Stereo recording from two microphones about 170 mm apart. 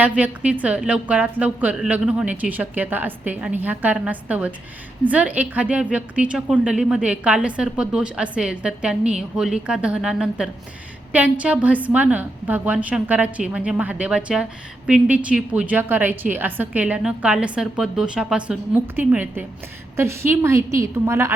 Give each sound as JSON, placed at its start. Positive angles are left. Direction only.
{"t": 0.0, "sound": "a woman's voice", "side_deg": -10}